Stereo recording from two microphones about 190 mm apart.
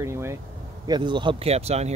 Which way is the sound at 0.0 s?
15° right (ahead or behind).